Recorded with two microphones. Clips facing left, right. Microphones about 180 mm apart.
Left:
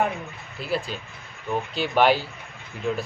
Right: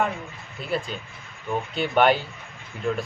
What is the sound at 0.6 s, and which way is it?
Speech, centre (ahead or behind).